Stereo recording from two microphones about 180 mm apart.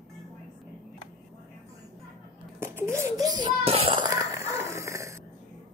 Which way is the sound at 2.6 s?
15° right (ahead or behind).